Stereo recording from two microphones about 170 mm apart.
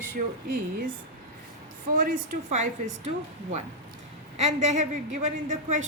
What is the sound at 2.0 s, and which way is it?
A man's voice, 50° right (ahead or behind).